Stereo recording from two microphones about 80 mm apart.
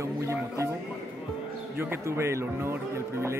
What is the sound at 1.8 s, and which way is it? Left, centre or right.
Speech, right.